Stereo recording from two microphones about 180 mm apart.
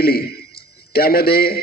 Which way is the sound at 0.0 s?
60° left (ahead or behind).